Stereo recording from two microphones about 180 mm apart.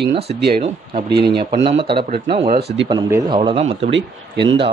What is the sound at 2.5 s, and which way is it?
Speech, 65° right (ahead or behind).